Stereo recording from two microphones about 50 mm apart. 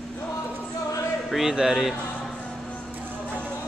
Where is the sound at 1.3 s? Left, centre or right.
Centre.